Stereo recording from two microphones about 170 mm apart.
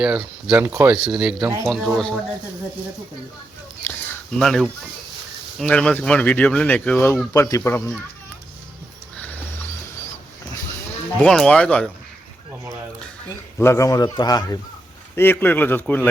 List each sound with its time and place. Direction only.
0.0 s speech: 5° right (ahead or behind)
0.6 s speech: 15° right (ahead or behind)
1.0 s speech: 5° right (ahead or behind)
3.8 s a sound: 5° left (ahead or behind)
5.5 s speech: 5° left (ahead or behind)
11.2 s speech: 5° left (ahead or behind)
13.6 s a man's voice: 15° left (ahead or behind)